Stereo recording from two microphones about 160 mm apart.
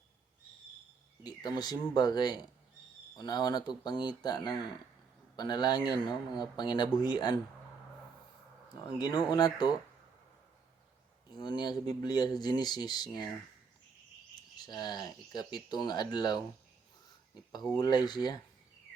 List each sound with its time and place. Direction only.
1.2 s speech: 25° left (ahead or behind)
8.7 s speech: 25° left (ahead or behind)
11.3 s speech: 30° left (ahead or behind)
14.6 s speech: 25° left (ahead or behind)
17.7 s speech: 25° left (ahead or behind)